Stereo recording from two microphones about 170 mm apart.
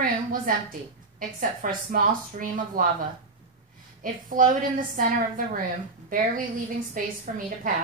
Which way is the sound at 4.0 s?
55° right (ahead or behind).